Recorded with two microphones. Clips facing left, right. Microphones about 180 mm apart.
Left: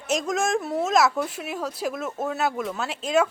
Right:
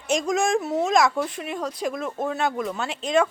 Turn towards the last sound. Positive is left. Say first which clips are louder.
# right 1 dB
turn(degrees=5)  # may be behind; listen again after turning